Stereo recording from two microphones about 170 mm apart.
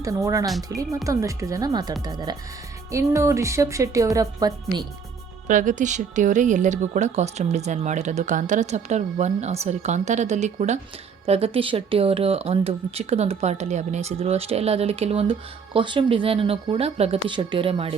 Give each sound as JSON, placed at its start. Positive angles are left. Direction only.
{"t": 0.0, "sound": "speech", "side_deg": -20}
{"t": 5.5, "sound": "speech", "side_deg": -50}